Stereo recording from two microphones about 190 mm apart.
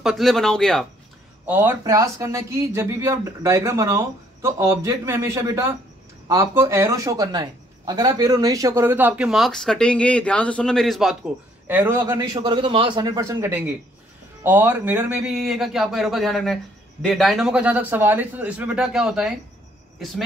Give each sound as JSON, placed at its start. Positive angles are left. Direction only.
{"t": 0.0, "sound": "speech", "side_deg": 0}
{"t": 1.4, "sound": "speech", "side_deg": -10}
{"t": 12.1, "sound": "a man's voice", "side_deg": -20}